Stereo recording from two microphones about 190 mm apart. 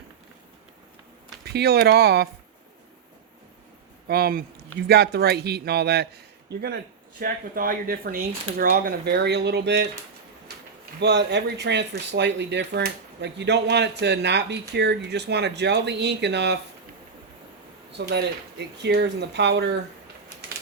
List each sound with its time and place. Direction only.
1.5 s speech: 55° right (ahead or behind)
4.1 s speech: 55° right (ahead or behind)
7.2 s speech: 50° right (ahead or behind)
11.0 s speech: 60° right (ahead or behind)
17.9 s speech: 60° right (ahead or behind)